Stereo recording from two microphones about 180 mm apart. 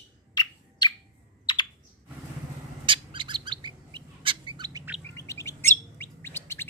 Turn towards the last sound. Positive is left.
turn(degrees=15)  # may be behind; listen again after turning